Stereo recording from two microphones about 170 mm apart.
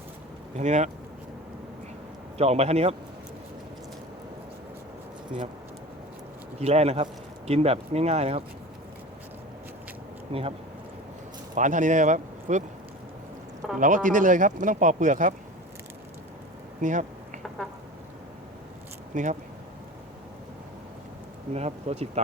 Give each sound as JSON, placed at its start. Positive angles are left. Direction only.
{"t": 0.5, "sound": "speech", "side_deg": -45}
{"t": 2.4, "sound": "speech", "side_deg": -40}
{"t": 6.6, "sound": "speech", "side_deg": -40}
{"t": 11.5, "sound": "speech", "side_deg": -50}
{"t": 13.7, "sound": "speech", "side_deg": -50}
{"t": 16.8, "sound": "a sound", "side_deg": -50}
{"t": 17.6, "sound": "a sound", "side_deg": 0}
{"t": 19.1, "sound": "speech", "side_deg": -50}
{"t": 21.5, "sound": "speech", "side_deg": -40}